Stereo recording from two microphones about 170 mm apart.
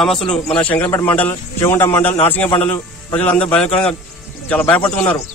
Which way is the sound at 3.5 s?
5° left (ahead or behind).